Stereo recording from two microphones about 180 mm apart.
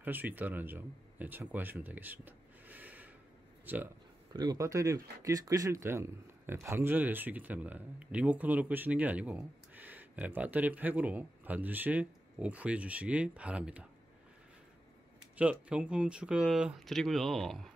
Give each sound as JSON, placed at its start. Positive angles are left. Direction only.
{"t": 0.0, "sound": "speech", "side_deg": -10}
{"t": 4.3, "sound": "speech", "side_deg": -20}
{"t": 15.3, "sound": "speech", "side_deg": -5}